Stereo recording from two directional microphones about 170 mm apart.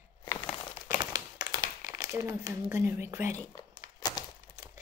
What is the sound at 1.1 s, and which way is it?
Tap, 25° right (ahead or behind).